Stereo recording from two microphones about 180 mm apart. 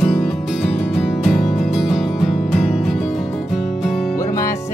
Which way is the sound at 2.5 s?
Centre (ahead or behind).